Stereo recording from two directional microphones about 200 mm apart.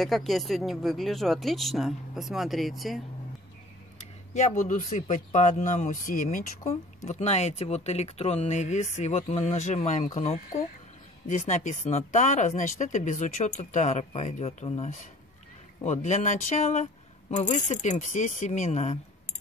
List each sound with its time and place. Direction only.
0.0 s speech: centre (ahead or behind)
4.3 s speech: 40° left (ahead or behind)